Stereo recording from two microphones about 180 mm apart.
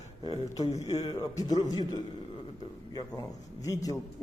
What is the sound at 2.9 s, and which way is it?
A man's voice, 20° left (ahead or behind).